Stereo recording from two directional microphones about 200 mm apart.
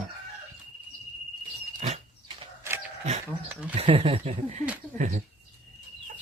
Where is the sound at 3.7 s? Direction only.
30° right (ahead or behind).